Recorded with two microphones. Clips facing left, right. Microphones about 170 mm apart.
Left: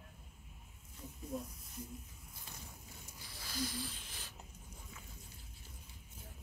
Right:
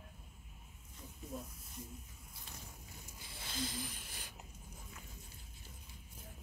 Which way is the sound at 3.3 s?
25° right (ahead or behind).